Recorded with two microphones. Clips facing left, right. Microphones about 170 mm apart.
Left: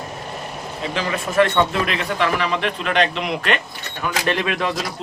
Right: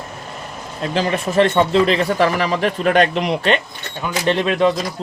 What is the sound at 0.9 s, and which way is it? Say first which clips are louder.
Speech: right 2 dB; 30° right (ahead or behind).